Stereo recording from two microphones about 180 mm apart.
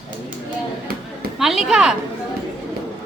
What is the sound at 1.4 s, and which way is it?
Speech, centre (ahead or behind).